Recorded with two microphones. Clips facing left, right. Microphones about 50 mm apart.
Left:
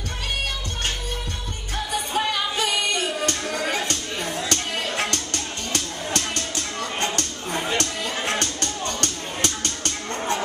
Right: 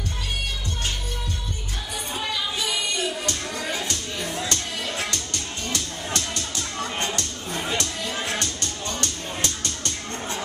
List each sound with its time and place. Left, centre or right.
2.1 s music: left
7.7 s music: left